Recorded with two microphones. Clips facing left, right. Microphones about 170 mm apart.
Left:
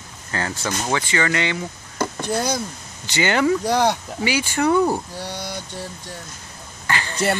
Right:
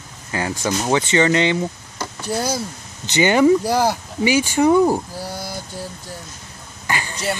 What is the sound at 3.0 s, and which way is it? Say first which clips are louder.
Speech: right 5 dB; 20° right (ahead or behind).